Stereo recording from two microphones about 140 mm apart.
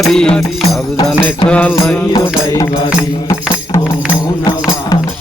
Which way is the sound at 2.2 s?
20° left (ahead or behind).